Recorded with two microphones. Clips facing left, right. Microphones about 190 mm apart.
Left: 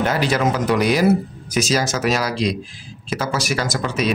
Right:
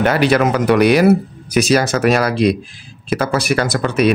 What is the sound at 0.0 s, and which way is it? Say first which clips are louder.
Speech: right 5 dB; 65° right (ahead or behind).